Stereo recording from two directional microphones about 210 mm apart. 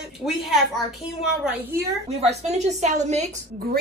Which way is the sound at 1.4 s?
10° right (ahead or behind).